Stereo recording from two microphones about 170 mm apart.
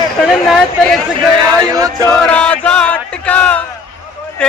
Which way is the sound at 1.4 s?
20° right (ahead or behind).